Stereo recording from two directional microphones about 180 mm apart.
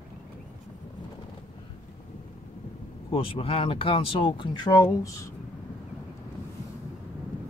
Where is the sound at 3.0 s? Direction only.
30° left (ahead or behind).